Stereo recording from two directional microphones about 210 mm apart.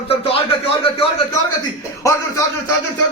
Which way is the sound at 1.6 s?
15° left (ahead or behind).